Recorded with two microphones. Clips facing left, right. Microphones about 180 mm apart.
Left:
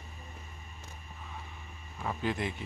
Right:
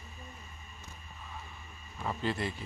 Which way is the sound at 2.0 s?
10° left (ahead or behind).